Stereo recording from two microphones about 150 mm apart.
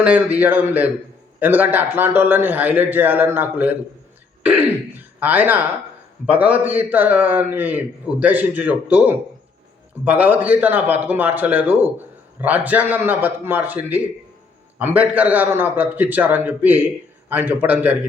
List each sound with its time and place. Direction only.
0.0 s a man's voice: 10° right (ahead or behind)